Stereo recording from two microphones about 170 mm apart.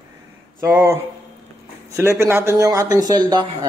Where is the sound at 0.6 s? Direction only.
15° right (ahead or behind).